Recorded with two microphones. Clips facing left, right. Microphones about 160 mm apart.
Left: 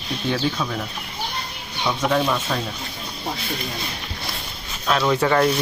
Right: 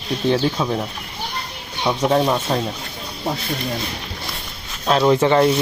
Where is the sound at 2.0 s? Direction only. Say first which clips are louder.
Right 4 dB; 30° right (ahead or behind).